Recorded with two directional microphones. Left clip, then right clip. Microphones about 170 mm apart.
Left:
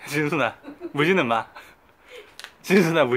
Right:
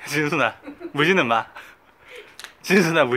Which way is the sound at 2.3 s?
15° left (ahead or behind).